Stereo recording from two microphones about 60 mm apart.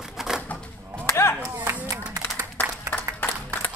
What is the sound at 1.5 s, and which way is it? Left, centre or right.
Clapping, right.